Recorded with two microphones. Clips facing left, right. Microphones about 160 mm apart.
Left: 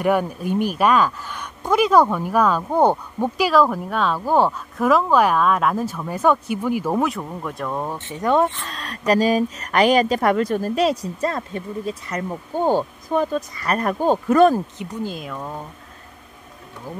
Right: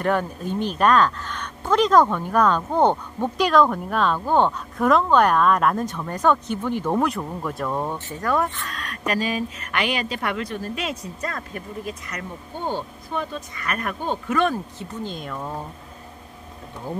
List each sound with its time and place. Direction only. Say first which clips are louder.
0.0 s speech: left 3 dB; 10° left (ahead or behind)
8.2 s speech: left 5 dB; 25° left (ahead or behind)
12.6 s speech: left 8 dB; 40° left (ahead or behind)
14.8 s speech: left 3 dB; 5° left (ahead or behind)